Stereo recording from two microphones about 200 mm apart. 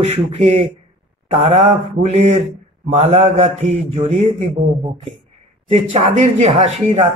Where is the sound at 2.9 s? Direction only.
35° right (ahead or behind).